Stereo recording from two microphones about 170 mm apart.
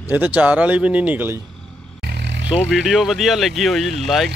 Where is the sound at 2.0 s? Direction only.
80° right.